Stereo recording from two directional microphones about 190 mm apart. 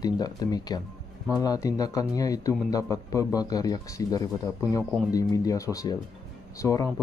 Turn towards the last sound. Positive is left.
turn(degrees=15)  # may be behind; listen again after turning